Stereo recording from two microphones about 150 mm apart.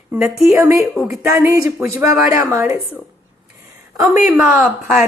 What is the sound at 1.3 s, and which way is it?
A woman's voice, 20° right (ahead or behind).